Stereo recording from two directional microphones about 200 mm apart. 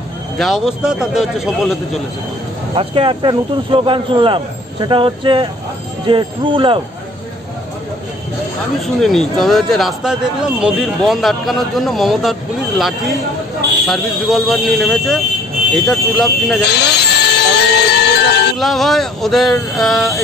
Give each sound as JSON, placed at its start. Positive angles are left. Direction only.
{"t": 0.4, "sound": "speech", "side_deg": 0}
{"t": 2.7, "sound": "speech", "side_deg": -25}
{"t": 9.0, "sound": "speech", "side_deg": 0}
{"t": 16.7, "sound": "music", "side_deg": 55}
{"t": 18.6, "sound": "speech", "side_deg": 0}